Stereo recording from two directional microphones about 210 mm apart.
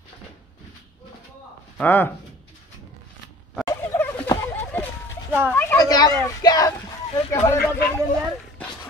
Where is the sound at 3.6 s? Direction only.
10° left (ahead or behind).